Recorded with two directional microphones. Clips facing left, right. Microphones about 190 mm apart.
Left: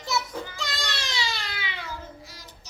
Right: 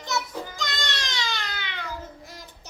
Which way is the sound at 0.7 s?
5° left (ahead or behind).